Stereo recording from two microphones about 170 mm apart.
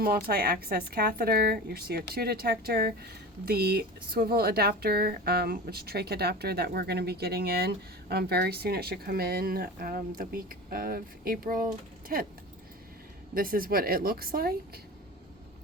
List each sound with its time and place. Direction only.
0.0 s a woman's voice: 60° right (ahead or behind)
13.3 s a woman's voice: 60° right (ahead or behind)